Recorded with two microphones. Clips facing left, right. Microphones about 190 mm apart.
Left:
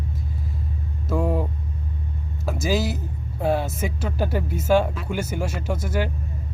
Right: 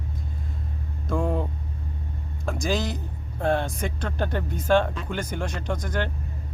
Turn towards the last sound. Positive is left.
turn(degrees=5)  # may be behind; listen again after turning